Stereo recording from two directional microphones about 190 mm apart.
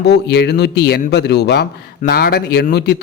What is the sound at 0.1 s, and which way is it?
A man's voice, 60° left (ahead or behind).